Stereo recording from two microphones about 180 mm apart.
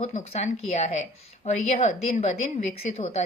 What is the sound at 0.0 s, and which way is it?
A woman's voice, 35° left (ahead or behind).